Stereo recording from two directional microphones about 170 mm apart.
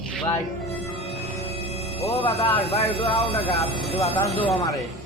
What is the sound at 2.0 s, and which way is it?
Speech, 35° left (ahead or behind).